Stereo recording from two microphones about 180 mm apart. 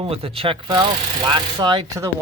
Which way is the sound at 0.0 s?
30° right (ahead or behind).